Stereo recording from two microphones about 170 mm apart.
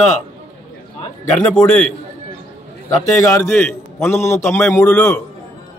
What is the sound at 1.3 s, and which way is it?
Speech, 5° left (ahead or behind).